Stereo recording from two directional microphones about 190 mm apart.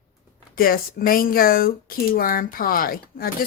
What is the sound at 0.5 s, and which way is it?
Speech, 50° left (ahead or behind).